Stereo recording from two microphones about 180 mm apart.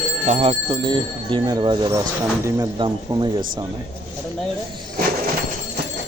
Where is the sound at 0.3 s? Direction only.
30° right (ahead or behind).